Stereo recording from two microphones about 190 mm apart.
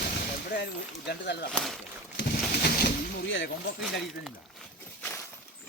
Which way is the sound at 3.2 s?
75° left (ahead or behind).